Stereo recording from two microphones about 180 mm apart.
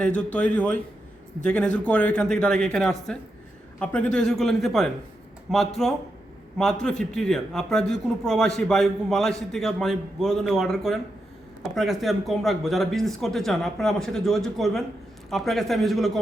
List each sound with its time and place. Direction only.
0.0 s a man's voice: 5° left (ahead or behind)